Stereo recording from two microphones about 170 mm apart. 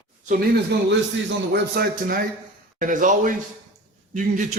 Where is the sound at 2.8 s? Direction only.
50° right (ahead or behind).